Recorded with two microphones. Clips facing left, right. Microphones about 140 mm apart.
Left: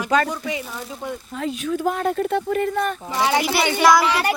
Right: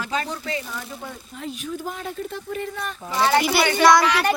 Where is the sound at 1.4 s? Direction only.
90° left.